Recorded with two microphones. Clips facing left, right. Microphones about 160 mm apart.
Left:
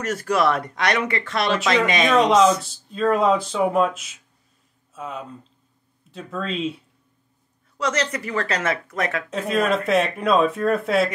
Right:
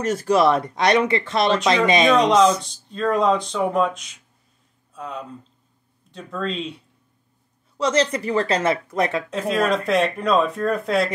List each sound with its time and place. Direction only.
0.0 s speech: 30° right (ahead or behind)
2.1 s speech: 5° left (ahead or behind)
7.7 s speech: 25° right (ahead or behind)
9.3 s speech: centre (ahead or behind)